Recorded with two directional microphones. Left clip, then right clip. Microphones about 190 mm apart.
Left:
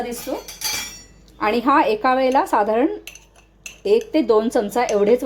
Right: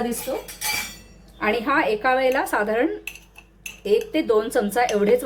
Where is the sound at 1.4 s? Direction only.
35° left (ahead or behind).